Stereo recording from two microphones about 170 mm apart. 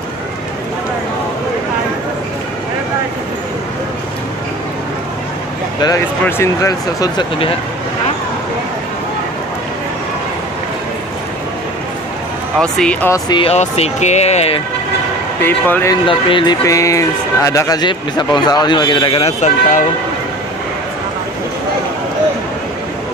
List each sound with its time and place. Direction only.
6.2 s speech: 15° left (ahead or behind)
12.5 s speech: 5° left (ahead or behind)
13.1 s speech: 30° left (ahead or behind)
15.4 s speech: 10° left (ahead or behind)
16.1 s speech: 30° left (ahead or behind)